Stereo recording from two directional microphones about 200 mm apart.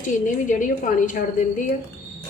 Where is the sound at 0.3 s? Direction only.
40° left (ahead or behind).